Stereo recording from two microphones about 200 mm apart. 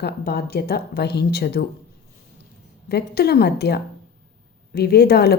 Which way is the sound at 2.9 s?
50° left (ahead or behind).